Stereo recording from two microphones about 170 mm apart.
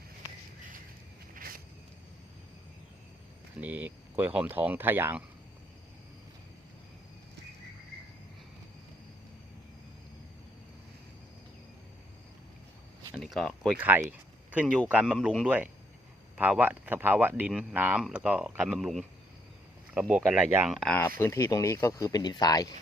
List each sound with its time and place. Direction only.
1.3 s a sound: 55° right (ahead or behind)
3.6 s speech: 10° right (ahead or behind)
13.1 s speech: 5° left (ahead or behind)
13.7 s speech: 10° right (ahead or behind)
20.7 s speech: centre (ahead or behind)
21.2 s speech: 15° left (ahead or behind)